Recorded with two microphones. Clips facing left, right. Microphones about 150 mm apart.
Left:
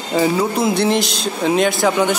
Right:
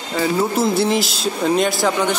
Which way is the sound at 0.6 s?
Centre (ahead or behind).